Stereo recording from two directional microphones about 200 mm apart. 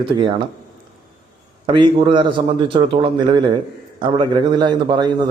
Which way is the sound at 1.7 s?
25° right (ahead or behind).